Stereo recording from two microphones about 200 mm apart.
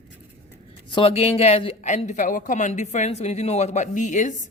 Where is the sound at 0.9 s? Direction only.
25° left (ahead or behind).